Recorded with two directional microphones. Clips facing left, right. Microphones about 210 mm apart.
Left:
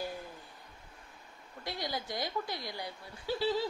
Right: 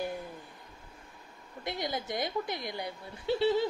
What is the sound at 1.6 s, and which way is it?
Speech, 20° right (ahead or behind).